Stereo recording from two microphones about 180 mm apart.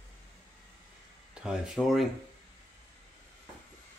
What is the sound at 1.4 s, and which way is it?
Speech, 5° right (ahead or behind).